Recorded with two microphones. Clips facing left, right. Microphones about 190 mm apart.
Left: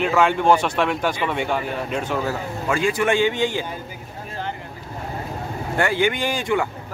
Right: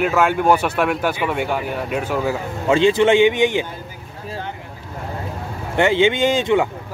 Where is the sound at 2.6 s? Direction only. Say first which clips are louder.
Right 7 dB; 25° right (ahead or behind).